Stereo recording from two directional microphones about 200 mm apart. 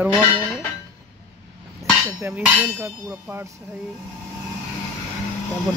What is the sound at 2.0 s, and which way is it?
Speech, 10° right (ahead or behind).